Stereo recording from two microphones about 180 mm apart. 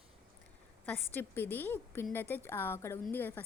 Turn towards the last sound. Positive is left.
turn(degrees=10)  # may be behind; listen again after turning